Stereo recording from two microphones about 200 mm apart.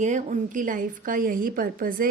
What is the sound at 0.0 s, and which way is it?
A woman's voice, 40° right (ahead or behind).